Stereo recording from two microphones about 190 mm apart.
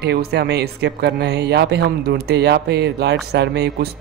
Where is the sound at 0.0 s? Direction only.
60° right (ahead or behind).